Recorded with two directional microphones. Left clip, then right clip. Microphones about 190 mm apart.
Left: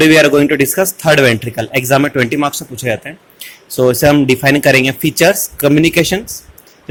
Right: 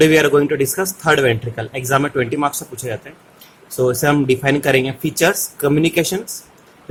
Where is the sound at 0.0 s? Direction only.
20° left (ahead or behind).